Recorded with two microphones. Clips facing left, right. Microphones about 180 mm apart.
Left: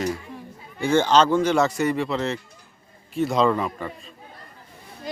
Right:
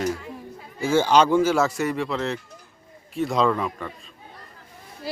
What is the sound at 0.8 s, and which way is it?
Speech, 5° right (ahead or behind).